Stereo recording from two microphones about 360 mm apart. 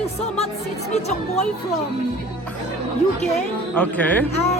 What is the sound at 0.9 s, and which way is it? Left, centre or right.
Speech, centre.